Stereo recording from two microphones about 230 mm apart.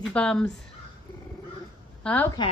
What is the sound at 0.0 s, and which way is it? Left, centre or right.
Speech, centre.